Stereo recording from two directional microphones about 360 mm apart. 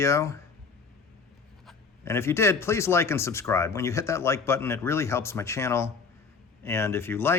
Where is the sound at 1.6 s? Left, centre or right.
Centre.